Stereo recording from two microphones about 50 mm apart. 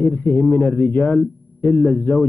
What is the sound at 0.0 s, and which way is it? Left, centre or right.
A man's voice, left.